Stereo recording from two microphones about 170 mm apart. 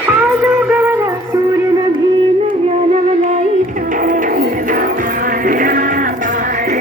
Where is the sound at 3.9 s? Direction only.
50° right (ahead or behind).